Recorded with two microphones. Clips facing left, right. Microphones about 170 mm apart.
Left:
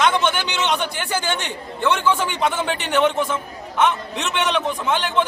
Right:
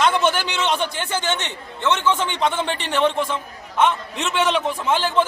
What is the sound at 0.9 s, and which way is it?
Speech, 25° right (ahead or behind).